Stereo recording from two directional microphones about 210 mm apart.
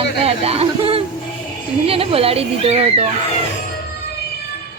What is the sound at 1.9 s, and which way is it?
Speech, 25° right (ahead or behind).